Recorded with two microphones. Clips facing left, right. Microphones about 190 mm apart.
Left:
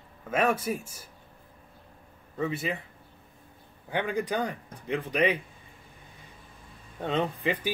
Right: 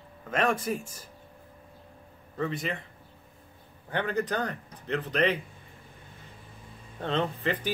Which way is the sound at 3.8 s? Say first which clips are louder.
Even; 10° left (ahead or behind).